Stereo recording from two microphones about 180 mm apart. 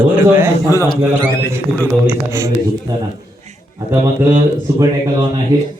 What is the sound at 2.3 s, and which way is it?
Speech, 15° right (ahead or behind).